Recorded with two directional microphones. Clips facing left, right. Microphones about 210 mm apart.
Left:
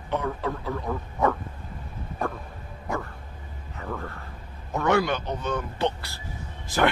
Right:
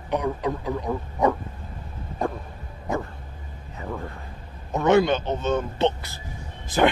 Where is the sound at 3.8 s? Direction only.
15° right (ahead or behind).